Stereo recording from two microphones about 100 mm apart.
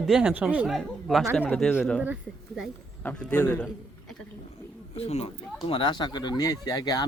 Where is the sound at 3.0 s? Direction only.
15° left (ahead or behind).